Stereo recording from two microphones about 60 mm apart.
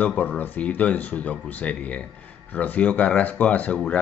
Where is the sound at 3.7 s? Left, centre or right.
Centre.